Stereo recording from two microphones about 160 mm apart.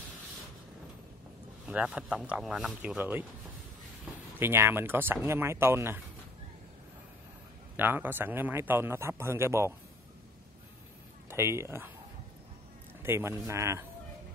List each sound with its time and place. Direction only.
1.7 s a man's voice: 5° right (ahead or behind)
4.4 s a man's voice: 15° right (ahead or behind)
7.7 s a man's voice: 10° right (ahead or behind)
11.2 s a man's voice: 15° right (ahead or behind)
13.0 s a man's voice: 15° right (ahead or behind)